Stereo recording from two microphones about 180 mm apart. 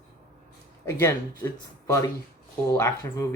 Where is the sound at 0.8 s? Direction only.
15° left (ahead or behind).